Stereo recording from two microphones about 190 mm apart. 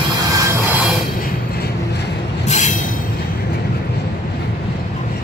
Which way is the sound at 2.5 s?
40° left (ahead or behind).